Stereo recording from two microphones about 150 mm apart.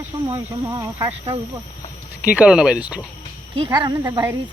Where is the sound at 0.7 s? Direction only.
20° right (ahead or behind).